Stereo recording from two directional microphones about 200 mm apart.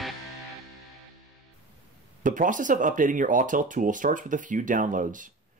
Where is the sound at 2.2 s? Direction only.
40° right (ahead or behind).